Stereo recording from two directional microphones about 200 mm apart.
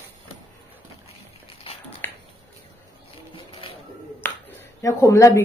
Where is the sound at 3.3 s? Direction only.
25° left (ahead or behind).